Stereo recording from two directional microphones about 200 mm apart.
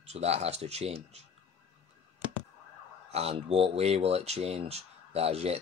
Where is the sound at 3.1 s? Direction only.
30° right (ahead or behind).